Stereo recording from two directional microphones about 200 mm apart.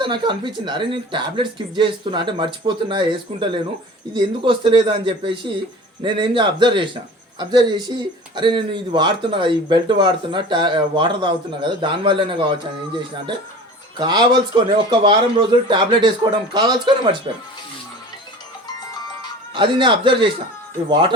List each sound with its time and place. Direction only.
0.0 s speech: 25° right (ahead or behind)
13.9 s speech: 20° right (ahead or behind)
19.5 s speech: 25° right (ahead or behind)